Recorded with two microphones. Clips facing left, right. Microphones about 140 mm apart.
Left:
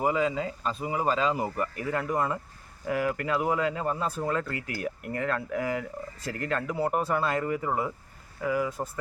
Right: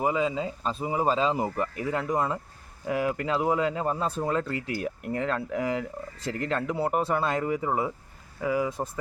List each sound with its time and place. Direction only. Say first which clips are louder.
0.0 s speech: even; 15° right (ahead or behind)